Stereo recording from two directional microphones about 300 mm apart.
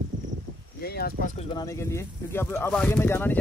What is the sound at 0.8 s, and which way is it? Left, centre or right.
Speech, left.